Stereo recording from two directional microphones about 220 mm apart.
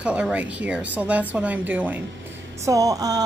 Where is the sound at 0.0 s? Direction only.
5° right (ahead or behind).